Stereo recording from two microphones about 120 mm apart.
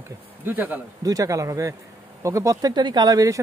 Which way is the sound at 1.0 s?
30° right (ahead or behind).